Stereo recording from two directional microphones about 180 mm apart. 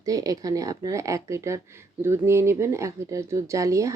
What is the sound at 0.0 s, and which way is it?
Speech, 20° right (ahead or behind).